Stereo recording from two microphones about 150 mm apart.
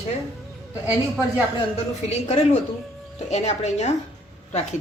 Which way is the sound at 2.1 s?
45° left (ahead or behind).